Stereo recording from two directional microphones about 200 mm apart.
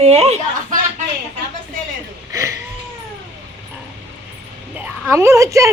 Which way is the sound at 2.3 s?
15° right (ahead or behind).